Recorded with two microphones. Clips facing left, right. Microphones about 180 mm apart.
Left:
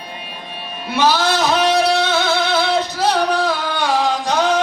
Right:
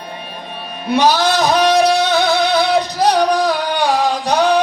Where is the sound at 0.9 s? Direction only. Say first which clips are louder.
Right 3 dB; 15° right (ahead or behind).